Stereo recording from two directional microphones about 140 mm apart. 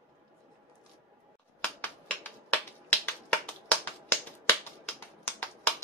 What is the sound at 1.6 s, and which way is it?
Finger snapping, 15° left (ahead or behind).